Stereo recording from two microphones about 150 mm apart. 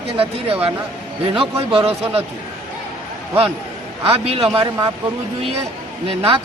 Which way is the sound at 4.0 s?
40° right (ahead or behind).